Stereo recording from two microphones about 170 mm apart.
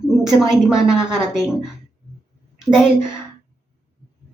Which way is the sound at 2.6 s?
5° right (ahead or behind).